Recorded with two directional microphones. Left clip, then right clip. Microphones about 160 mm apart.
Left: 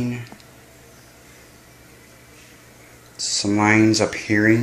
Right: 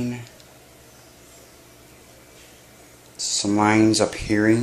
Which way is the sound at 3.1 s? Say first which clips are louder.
Left 1 dB; centre (ahead or behind).